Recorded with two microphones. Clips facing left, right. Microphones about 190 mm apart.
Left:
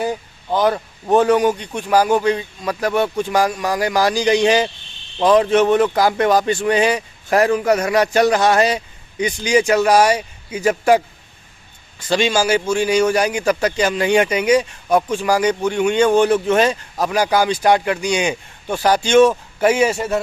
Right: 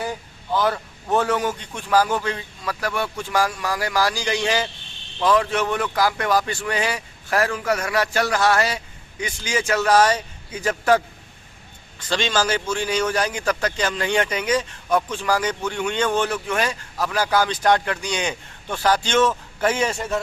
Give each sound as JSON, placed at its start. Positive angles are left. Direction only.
{"t": 0.5, "sound": "a man's voice", "side_deg": 20}